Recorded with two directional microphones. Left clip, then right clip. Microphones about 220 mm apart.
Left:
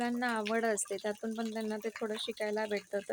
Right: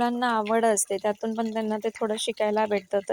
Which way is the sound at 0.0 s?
25° right (ahead or behind).